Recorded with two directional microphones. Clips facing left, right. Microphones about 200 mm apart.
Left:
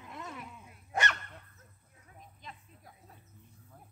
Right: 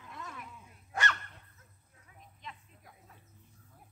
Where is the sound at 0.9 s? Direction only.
20° left (ahead or behind).